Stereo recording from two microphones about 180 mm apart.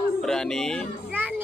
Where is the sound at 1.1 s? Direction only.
10° right (ahead or behind).